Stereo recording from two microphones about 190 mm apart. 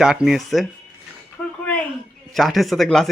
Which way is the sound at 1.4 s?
10° left (ahead or behind).